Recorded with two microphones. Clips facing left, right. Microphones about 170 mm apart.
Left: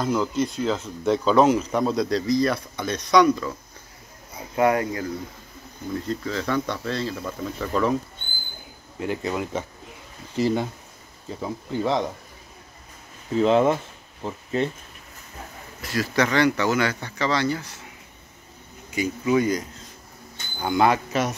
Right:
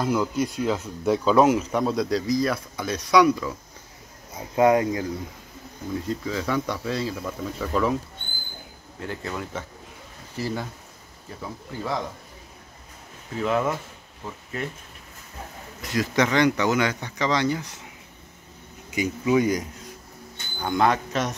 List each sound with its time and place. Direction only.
0.0 s speech: 10° right (ahead or behind)
4.6 s speech: 20° right (ahead or behind); by 7.9 s 5° right (ahead or behind)
9.0 s speech: 15° left (ahead or behind)
13.4 s speech: 25° left (ahead or behind)
15.8 s speech: 20° right (ahead or behind)
18.9 s speech: 15° right (ahead or behind)
20.6 s speech: 5° left (ahead or behind)